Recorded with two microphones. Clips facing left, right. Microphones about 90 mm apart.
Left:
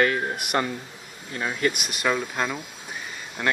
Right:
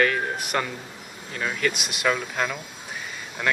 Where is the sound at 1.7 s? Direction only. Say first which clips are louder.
Even; 45° left (ahead or behind).